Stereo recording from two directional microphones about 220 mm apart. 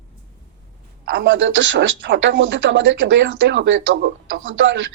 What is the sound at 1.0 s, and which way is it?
Speech, 50° right (ahead or behind).